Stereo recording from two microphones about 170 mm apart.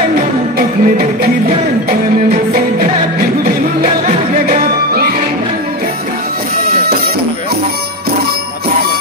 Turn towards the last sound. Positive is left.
turn(degrees=-65)  # may be behind; listen again after turning